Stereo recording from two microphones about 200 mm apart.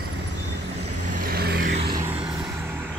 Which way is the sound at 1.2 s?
50° right (ahead or behind).